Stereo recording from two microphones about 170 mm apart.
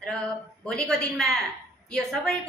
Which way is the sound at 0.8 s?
5° left (ahead or behind).